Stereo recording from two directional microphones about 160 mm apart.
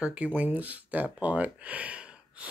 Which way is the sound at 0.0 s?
5° right (ahead or behind).